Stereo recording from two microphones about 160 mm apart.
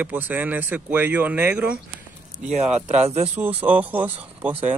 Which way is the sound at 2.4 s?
45° right (ahead or behind).